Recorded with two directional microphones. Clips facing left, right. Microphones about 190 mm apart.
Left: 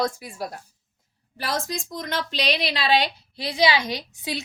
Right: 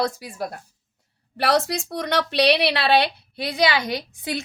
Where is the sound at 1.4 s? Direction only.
70° right (ahead or behind).